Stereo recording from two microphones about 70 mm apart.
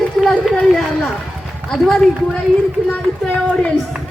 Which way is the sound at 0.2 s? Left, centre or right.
Centre.